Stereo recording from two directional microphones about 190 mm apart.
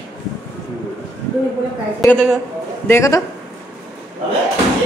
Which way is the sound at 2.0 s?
10° left (ahead or behind).